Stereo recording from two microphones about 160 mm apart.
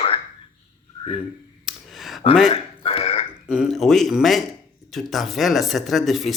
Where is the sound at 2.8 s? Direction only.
35° left (ahead or behind).